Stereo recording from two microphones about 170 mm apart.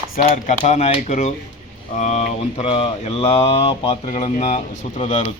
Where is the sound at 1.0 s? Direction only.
45° left (ahead or behind).